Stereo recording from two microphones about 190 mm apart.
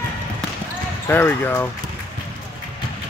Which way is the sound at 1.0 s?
10° left (ahead or behind).